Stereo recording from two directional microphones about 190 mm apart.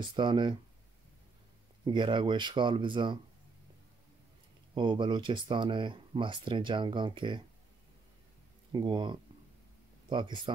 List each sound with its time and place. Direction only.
0.1 s speech: 25° right (ahead or behind)
1.9 s speech: 25° right (ahead or behind)
4.7 s speech: 25° right (ahead or behind)
8.7 s speech: 25° right (ahead or behind)